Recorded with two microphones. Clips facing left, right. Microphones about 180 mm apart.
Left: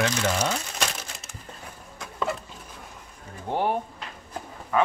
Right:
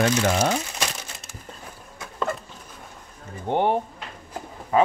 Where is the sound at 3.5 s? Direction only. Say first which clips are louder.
Right 4 dB; 25° right (ahead or behind).